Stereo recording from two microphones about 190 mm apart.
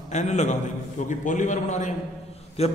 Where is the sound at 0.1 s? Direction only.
35° left (ahead or behind).